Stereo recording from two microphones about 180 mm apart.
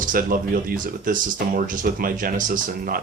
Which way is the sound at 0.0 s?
50° right (ahead or behind).